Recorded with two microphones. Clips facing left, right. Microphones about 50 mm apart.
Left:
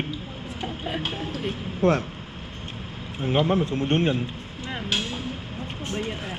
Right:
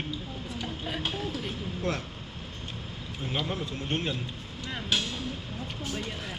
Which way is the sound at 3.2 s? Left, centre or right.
Left.